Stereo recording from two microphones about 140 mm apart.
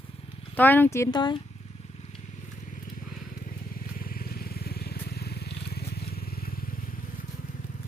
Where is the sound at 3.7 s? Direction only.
90° left.